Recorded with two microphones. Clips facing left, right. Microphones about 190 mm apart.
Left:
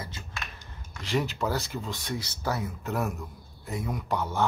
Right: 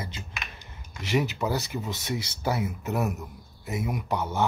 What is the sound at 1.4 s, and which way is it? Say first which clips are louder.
A man's voice: right 1 dB; 15° right (ahead or behind).